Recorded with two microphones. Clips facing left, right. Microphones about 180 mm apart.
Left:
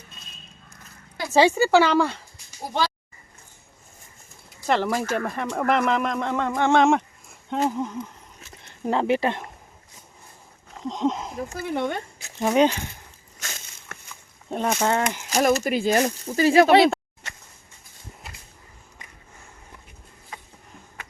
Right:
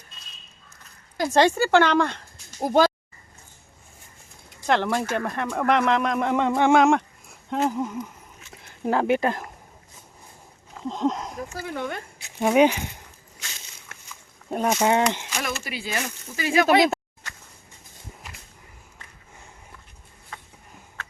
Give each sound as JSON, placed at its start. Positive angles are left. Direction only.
{"t": 1.3, "sound": "speech", "side_deg": 5}
{"t": 2.6, "sound": "speech", "side_deg": -50}
{"t": 4.4, "sound": "a sound", "side_deg": 0}
{"t": 5.0, "sound": "speech", "side_deg": 0}
{"t": 6.1, "sound": "speech", "side_deg": -15}
{"t": 10.8, "sound": "speech", "side_deg": 0}
{"t": 11.5, "sound": "speech", "side_deg": 25}
{"t": 12.4, "sound": "speech", "side_deg": -10}
{"t": 14.5, "sound": "speech", "side_deg": -10}
{"t": 15.3, "sound": "speech", "side_deg": 40}